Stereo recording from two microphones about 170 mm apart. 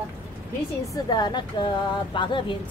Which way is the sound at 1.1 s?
25° left (ahead or behind).